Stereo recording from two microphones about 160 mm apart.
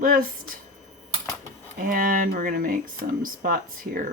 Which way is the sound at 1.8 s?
60° right (ahead or behind).